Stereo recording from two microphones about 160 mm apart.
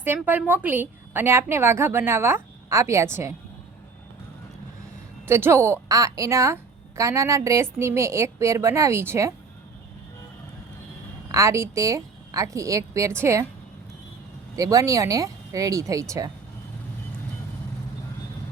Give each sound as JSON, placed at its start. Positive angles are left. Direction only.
{"t": 0.0, "sound": "a woman's voice", "side_deg": -15}
{"t": 5.2, "sound": "a woman's voice", "side_deg": -15}
{"t": 11.3, "sound": "a woman's voice", "side_deg": -20}
{"t": 14.5, "sound": "a woman's voice", "side_deg": -20}